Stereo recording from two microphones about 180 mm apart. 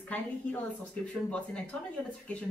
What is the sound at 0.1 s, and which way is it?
Speech, 10° left (ahead or behind).